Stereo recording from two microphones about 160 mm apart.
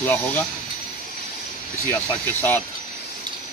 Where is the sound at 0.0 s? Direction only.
10° left (ahead or behind).